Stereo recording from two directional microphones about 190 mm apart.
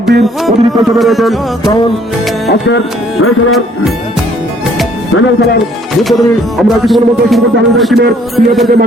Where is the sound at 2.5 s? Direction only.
75° left (ahead or behind).